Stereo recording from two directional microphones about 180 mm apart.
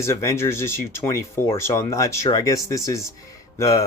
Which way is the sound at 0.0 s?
15° left (ahead or behind).